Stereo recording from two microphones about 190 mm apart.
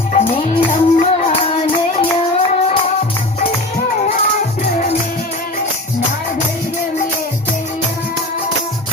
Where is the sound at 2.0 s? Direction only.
35° left (ahead or behind).